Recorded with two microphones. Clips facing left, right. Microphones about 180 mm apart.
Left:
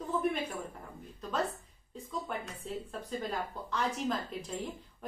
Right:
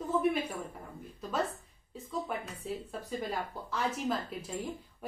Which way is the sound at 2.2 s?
5° right (ahead or behind).